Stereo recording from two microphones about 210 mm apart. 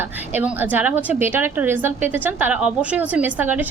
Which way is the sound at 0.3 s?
10° right (ahead or behind).